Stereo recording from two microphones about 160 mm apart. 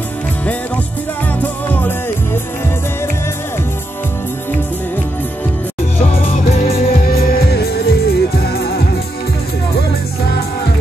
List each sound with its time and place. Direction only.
1.4 s music: 10° left (ahead or behind)
5.9 s music: 45° left (ahead or behind)
6.8 s music: 65° left (ahead or behind)